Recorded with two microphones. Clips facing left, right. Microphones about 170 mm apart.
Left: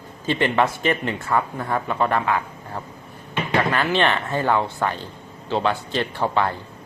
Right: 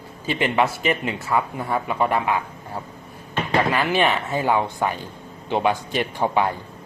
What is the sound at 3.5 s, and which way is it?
Speech, 5° right (ahead or behind).